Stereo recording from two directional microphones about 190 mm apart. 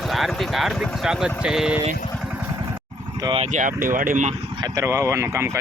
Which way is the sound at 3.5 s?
45° right (ahead or behind).